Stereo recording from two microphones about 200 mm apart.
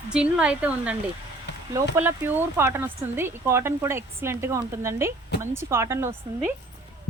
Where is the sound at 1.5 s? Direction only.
60° left (ahead or behind).